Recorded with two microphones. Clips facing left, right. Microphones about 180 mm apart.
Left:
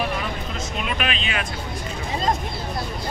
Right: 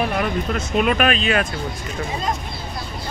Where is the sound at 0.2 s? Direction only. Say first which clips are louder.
Right 7 dB; 60° right (ahead or behind).